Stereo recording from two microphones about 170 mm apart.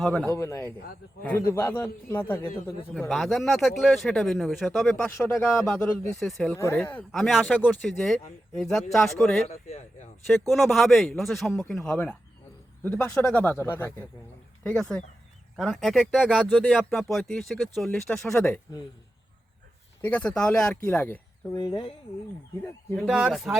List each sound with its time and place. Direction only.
0.0 s speech: 5° left (ahead or behind)
0.3 s a man's voice: 15° left (ahead or behind)
3.1 s speech: centre (ahead or behind)
6.6 s a man's voice: 15° left (ahead or behind)
9.5 s speech: 40° left (ahead or behind)
10.5 s a man's voice: centre (ahead or behind)
20.0 s a man's voice: 10° left (ahead or behind)
21.5 s speech: 25° left (ahead or behind)
23.0 s speech: 5° right (ahead or behind)